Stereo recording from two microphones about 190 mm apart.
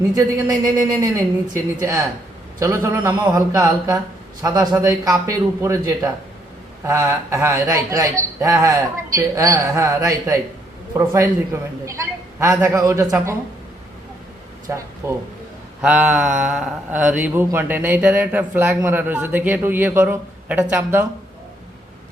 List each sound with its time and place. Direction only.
0.2 s a man's voice: 20° right (ahead or behind)
14.7 s speech: 10° right (ahead or behind)